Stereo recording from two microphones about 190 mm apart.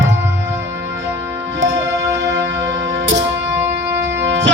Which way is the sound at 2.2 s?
65° right (ahead or behind).